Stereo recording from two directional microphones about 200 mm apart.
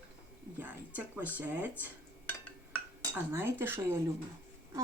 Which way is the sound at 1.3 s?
10° right (ahead or behind).